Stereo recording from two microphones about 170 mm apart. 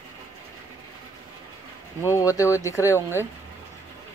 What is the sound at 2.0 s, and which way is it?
Speech, 20° left (ahead or behind).